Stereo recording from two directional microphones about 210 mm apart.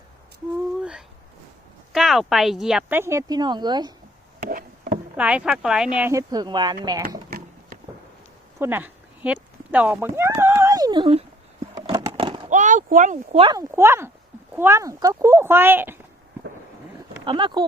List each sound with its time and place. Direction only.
0.8 s a sound: 5° right (ahead or behind)
1.9 s speech: centre (ahead or behind); by 3.9 s 20° right (ahead or behind)
5.1 s speech: 5° right (ahead or behind)
7.3 s a sound: 45° right (ahead or behind)
8.5 s speech: 10° right (ahead or behind)
11.7 s a sound: 20° right (ahead or behind)
12.5 s speech: 35° right (ahead or behind)
13.4 s speech: 15° right (ahead or behind)
17.2 s speech: 25° right (ahead or behind)